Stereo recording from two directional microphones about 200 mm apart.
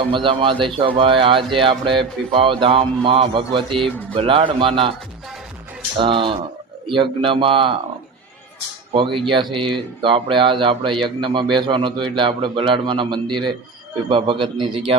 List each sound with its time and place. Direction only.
0.1 s speech: 25° right (ahead or behind)
6.0 s speech: 25° right (ahead or behind)
8.9 s speech: 25° right (ahead or behind)